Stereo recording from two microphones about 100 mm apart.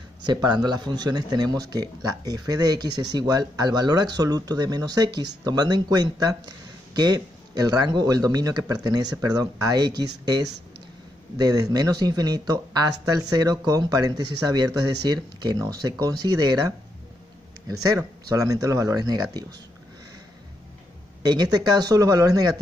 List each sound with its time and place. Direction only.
0.3 s speech: 45° right (ahead or behind)
21.2 s speech: 45° right (ahead or behind)